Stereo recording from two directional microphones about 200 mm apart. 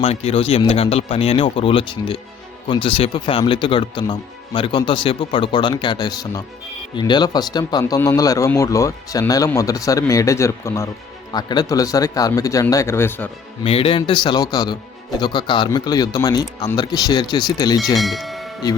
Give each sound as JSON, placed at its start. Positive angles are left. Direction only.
{"t": 0.0, "sound": "speech", "side_deg": 30}
{"t": 13.7, "sound": "speech", "side_deg": 30}
{"t": 17.9, "sound": "speech", "side_deg": 0}